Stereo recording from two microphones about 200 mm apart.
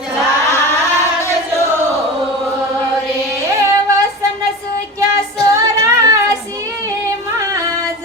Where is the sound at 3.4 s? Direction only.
15° right (ahead or behind).